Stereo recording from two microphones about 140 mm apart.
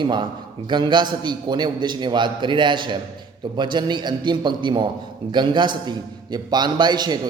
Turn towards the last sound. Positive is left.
turn(degrees=-30)  # may be behind; listen again after turning